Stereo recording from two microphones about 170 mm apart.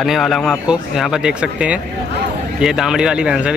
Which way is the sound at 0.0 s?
Centre (ahead or behind).